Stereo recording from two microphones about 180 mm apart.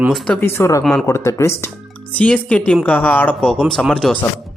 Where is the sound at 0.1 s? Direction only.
10° left (ahead or behind).